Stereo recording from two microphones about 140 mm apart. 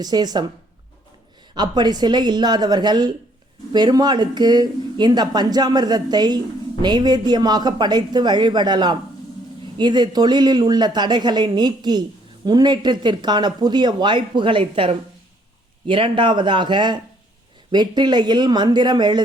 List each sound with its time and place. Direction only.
0.0 s speech: 30° right (ahead or behind)
1.5 s speech: 30° right (ahead or behind)